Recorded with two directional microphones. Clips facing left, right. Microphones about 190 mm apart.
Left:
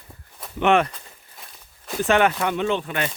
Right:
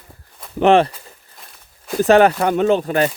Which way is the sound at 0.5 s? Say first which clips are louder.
Right 6 dB; 35° right (ahead or behind).